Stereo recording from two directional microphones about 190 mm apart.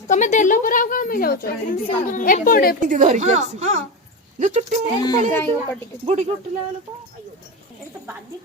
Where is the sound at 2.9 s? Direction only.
40° right (ahead or behind).